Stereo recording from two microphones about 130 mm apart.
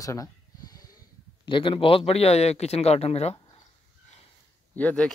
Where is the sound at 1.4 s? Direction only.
40° left (ahead or behind).